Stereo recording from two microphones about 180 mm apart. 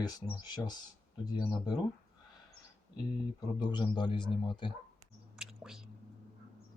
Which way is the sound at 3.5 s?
25° left (ahead or behind).